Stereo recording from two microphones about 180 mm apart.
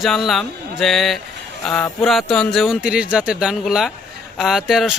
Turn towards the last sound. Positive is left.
turn(degrees=0)  # may be behind; listen again after turning